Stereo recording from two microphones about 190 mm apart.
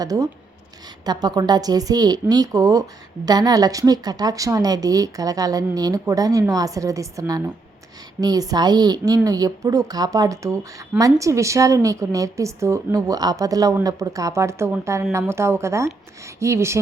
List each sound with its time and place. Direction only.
0.0 s a woman's voice: 20° right (ahead or behind)